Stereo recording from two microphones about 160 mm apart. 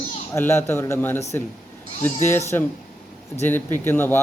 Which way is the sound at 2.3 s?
15° left (ahead or behind).